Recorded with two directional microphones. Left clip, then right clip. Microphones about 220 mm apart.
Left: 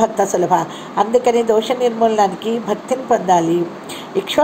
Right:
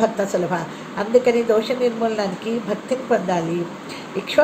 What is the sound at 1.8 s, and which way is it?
Speech, 20° left (ahead or behind).